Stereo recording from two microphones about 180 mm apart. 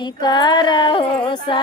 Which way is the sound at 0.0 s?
25° left (ahead or behind).